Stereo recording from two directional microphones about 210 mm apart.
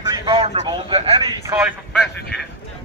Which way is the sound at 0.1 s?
25° right (ahead or behind).